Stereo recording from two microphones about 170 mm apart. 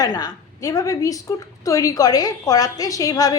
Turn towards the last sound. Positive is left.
turn(degrees=20)  # may be behind; listen again after turning